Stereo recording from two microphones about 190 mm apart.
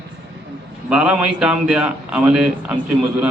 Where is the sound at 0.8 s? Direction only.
5° right (ahead or behind).